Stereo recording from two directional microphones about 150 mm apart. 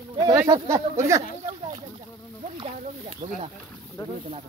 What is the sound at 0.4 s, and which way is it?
Speech, 20° right (ahead or behind).